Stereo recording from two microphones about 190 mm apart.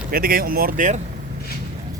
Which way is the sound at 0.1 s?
50° right (ahead or behind).